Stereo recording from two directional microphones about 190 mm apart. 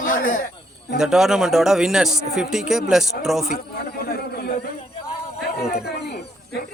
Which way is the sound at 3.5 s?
55° left (ahead or behind).